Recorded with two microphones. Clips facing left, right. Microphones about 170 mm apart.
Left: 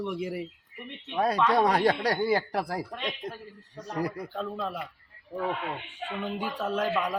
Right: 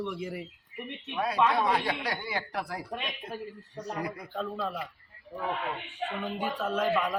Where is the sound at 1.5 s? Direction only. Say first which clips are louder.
Left 5 dB; 40° left (ahead or behind).